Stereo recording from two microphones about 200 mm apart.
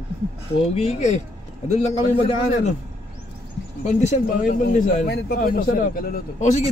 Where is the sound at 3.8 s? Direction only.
35° left (ahead or behind).